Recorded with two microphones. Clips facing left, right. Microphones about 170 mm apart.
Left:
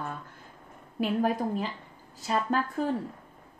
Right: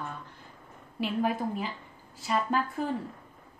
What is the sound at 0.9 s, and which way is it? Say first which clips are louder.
Speech: left 2 dB; 40° left (ahead or behind).